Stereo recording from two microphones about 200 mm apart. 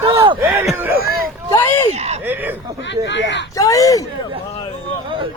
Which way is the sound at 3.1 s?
65° left (ahead or behind).